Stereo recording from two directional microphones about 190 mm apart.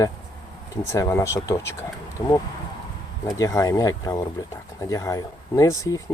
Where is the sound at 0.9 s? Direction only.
15° left (ahead or behind).